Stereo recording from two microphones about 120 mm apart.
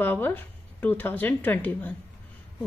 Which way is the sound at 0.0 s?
15° left (ahead or behind).